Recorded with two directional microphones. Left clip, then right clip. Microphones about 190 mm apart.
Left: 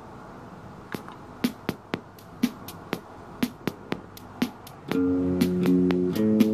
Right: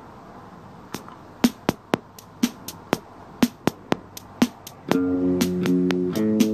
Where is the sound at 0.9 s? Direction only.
45° right (ahead or behind).